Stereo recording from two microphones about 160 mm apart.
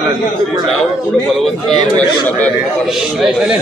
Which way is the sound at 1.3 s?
Centre (ahead or behind).